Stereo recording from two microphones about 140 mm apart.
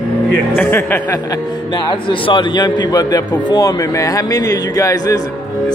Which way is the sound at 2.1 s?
35° left (ahead or behind).